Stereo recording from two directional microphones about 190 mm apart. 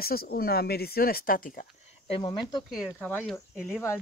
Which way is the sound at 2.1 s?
25° left (ahead or behind).